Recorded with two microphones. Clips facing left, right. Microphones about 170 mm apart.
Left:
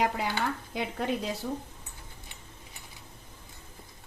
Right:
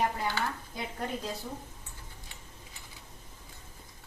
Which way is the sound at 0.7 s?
80° left.